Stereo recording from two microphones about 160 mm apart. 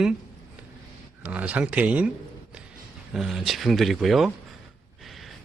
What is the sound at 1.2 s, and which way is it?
Speech, 10° right (ahead or behind).